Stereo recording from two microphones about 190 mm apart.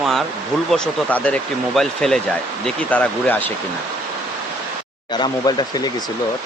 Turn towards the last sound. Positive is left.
turn(degrees=20)  # may be behind; listen again after turning